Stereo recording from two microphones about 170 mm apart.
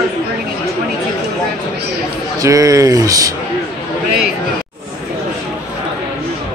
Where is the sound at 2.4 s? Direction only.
20° right (ahead or behind).